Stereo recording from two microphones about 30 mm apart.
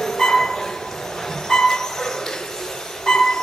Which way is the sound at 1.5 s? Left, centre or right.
Centre.